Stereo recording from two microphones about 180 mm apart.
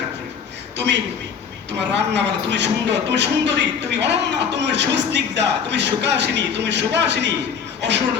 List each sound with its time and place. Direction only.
1.9 s a man's voice: 75° right (ahead or behind)